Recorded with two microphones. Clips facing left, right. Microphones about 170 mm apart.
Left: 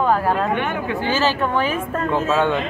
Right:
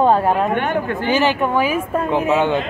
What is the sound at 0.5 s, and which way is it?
Speech, 50° right (ahead or behind).